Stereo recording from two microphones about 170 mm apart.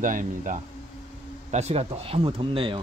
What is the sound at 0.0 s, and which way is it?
Speech, 50° right (ahead or behind).